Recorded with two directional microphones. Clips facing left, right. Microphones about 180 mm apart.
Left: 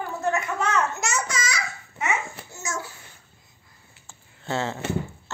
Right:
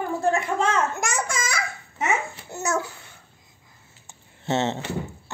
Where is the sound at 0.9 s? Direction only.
50° right (ahead or behind).